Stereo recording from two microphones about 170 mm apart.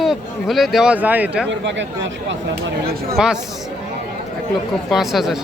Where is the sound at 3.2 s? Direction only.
5° right (ahead or behind).